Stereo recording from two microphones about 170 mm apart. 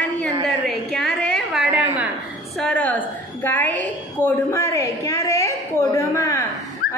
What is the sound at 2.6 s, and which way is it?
A woman's voice, 5° left (ahead or behind).